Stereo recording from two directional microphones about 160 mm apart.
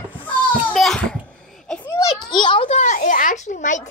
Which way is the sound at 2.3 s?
30° left (ahead or behind).